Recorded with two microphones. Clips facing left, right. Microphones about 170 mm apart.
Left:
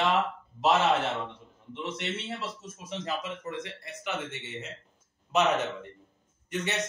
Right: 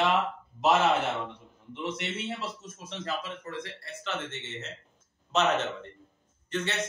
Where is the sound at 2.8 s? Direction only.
15° left (ahead or behind).